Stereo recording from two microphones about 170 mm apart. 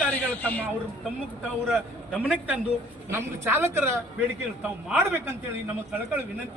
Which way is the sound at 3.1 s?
15° right (ahead or behind).